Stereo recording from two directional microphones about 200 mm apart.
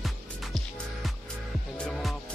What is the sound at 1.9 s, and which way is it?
Music, centre (ahead or behind).